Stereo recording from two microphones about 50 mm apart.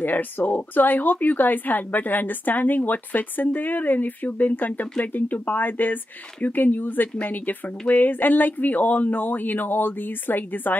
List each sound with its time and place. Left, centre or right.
0.0 s speech: left